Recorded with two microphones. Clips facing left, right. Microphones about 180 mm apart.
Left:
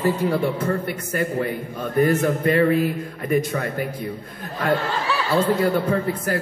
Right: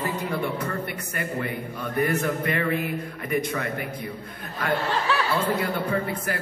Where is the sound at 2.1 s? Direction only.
35° left (ahead or behind).